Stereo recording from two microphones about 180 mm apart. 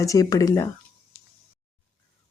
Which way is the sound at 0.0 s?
20° left (ahead or behind).